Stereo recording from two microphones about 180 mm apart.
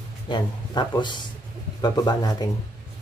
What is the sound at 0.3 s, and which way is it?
A man's voice, 25° left (ahead or behind).